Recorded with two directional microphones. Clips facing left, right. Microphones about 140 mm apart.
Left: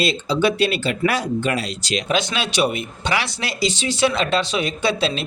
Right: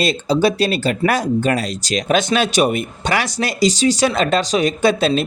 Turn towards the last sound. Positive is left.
turn(degrees=-45)  # may be behind; listen again after turning